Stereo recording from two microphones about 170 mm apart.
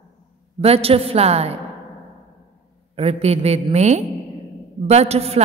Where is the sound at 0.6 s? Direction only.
35° right (ahead or behind).